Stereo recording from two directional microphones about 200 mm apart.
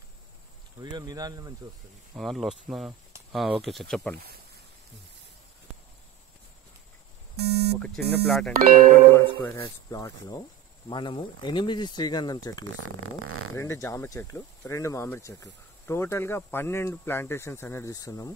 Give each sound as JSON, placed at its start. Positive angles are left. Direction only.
{"t": 0.7, "sound": "speech", "side_deg": -20}
{"t": 2.1, "sound": "speech", "side_deg": 0}
{"t": 7.3, "sound": "speech", "side_deg": -55}
{"t": 7.8, "sound": "speech", "side_deg": 0}
{"t": 9.1, "sound": "speech", "side_deg": 15}
{"t": 12.8, "sound": "speech", "side_deg": -90}
{"t": 13.6, "sound": "speech", "side_deg": 15}